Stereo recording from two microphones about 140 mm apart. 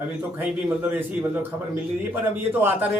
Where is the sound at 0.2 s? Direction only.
15° right (ahead or behind).